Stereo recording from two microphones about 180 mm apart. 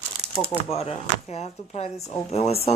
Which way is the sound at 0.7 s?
35° left (ahead or behind).